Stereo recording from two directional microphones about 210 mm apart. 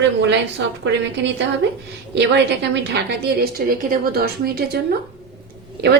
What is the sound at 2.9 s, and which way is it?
A woman's voice, 50° right (ahead or behind).